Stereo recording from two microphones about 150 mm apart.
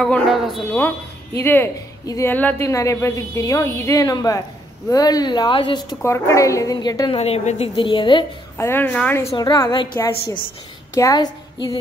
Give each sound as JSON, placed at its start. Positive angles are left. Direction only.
{"t": 0.0, "sound": "a sound", "side_deg": 0}
{"t": 1.4, "sound": "a woman's voice", "side_deg": 15}
{"t": 6.0, "sound": "a woman's voice", "side_deg": 20}
{"t": 7.2, "sound": "a woman's voice", "side_deg": 45}
{"t": 8.5, "sound": "a woman's voice", "side_deg": 15}
{"t": 9.4, "sound": "a woman's voice", "side_deg": 25}